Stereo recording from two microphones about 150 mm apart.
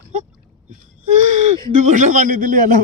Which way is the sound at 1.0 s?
50° right (ahead or behind).